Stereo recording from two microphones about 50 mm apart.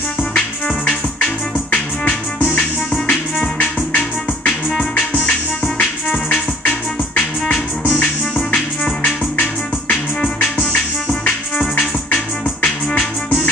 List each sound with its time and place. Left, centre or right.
1.7 s music: left
9.0 s music: left
12.6 s music: left